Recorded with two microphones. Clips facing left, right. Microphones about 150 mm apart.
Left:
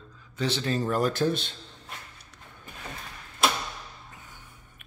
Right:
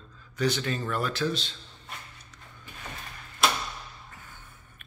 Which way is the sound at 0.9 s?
45° left (ahead or behind).